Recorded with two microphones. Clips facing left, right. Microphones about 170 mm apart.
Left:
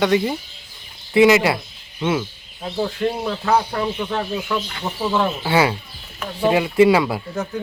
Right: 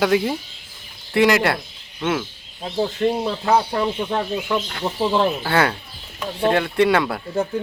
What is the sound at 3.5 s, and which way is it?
Speech, 25° right (ahead or behind).